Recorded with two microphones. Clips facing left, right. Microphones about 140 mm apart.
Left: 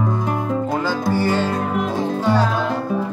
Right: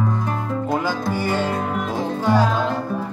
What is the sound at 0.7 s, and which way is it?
Music, 15° right (ahead or behind).